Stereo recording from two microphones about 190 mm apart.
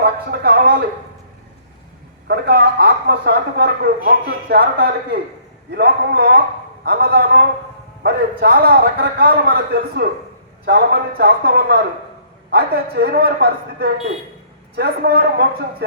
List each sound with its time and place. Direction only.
0.0 s a man's voice: 55° right (ahead or behind)
2.2 s a man's voice: 60° right (ahead or behind)